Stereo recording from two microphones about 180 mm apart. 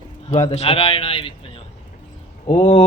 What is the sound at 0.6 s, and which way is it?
Mantra, 35° left (ahead or behind).